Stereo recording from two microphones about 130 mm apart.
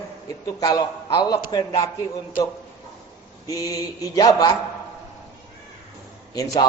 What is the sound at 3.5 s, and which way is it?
A man's voice, 25° left (ahead or behind).